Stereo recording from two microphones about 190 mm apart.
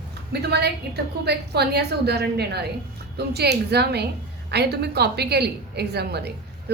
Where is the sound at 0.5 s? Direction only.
60° right (ahead or behind).